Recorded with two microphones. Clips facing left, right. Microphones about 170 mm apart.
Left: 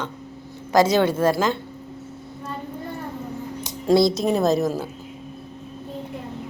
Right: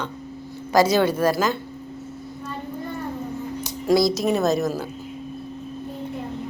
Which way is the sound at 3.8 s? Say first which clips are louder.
Left 1 dB; 30° left (ahead or behind).